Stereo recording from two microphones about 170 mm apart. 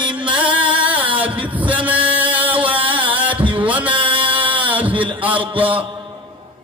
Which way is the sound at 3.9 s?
30° right (ahead or behind).